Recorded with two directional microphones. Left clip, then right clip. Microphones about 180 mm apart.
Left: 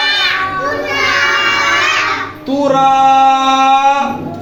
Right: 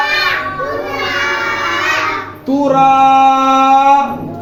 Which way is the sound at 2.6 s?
Centre (ahead or behind).